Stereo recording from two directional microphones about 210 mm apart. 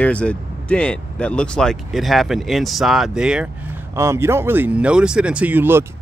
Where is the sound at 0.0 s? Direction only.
5° left (ahead or behind).